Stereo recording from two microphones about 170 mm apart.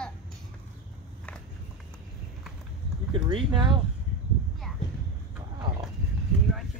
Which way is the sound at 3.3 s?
30° right (ahead or behind).